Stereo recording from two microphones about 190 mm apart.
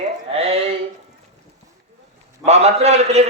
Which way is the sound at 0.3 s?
30° right (ahead or behind).